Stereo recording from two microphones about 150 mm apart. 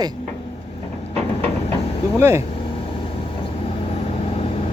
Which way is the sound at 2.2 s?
15° right (ahead or behind).